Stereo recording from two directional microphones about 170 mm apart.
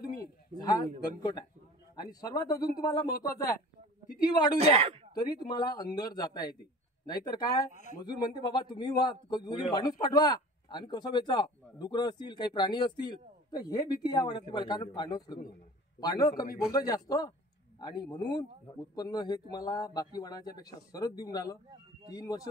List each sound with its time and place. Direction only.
0.2 s speech: 20° left (ahead or behind)
2.0 s a man's voice: 25° left (ahead or behind)
4.3 s a man's voice: 25° left (ahead or behind)
4.6 s speech: 35° right (ahead or behind)
5.1 s a man's voice: 25° left (ahead or behind)
7.7 s speech: 45° left (ahead or behind)
8.0 s a man's voice: 25° left (ahead or behind)